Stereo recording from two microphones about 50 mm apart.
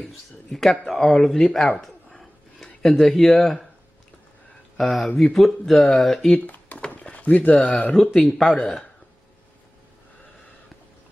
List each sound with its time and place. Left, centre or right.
0.0 s speech: centre
4.7 s speech: centre
6.9 s a sound: left
7.9 s speech: centre